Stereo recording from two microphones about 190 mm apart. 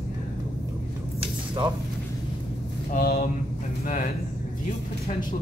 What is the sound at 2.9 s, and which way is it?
Speech, 50° left (ahead or behind).